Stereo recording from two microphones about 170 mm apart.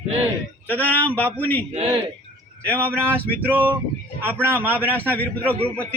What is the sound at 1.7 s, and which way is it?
Speech, 35° right (ahead or behind).